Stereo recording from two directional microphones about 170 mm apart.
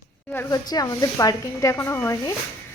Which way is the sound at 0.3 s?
20° left (ahead or behind).